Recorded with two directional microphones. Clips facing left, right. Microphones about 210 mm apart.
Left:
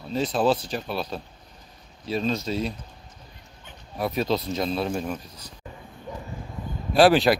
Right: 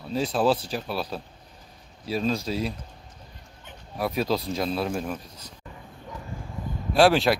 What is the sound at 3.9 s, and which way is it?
Speech, centre (ahead or behind).